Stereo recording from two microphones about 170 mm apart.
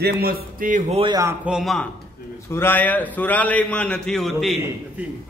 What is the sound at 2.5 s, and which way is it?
A man's voice, 15° left (ahead or behind).